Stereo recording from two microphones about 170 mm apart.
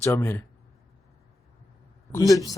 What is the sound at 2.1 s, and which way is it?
Speech, 20° left (ahead or behind).